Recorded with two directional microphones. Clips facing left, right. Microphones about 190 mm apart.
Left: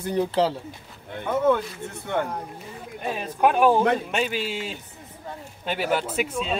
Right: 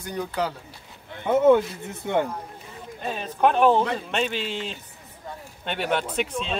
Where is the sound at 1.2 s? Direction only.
25° right (ahead or behind).